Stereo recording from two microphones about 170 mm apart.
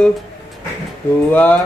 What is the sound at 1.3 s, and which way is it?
Speech, 10° left (ahead or behind).